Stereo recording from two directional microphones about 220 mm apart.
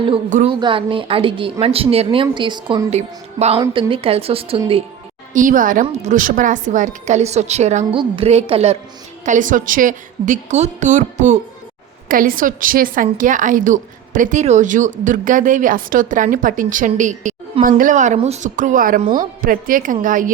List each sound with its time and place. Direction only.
0.0 s a woman's voice: 25° right (ahead or behind)
5.3 s a woman's voice: 35° right (ahead or behind)